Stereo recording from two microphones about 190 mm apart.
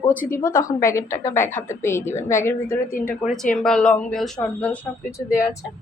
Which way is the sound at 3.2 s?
5° left (ahead or behind).